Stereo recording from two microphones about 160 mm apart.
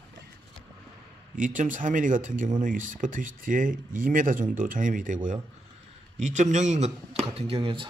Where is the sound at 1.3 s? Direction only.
55° right (ahead or behind).